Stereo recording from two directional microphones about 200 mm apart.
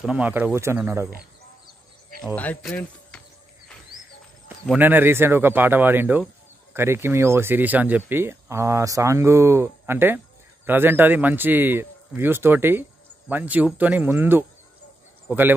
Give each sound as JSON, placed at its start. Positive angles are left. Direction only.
{"t": 0.0, "sound": "speech", "side_deg": -5}
{"t": 2.3, "sound": "speech", "side_deg": 5}
{"t": 4.7, "sound": "speech", "side_deg": -10}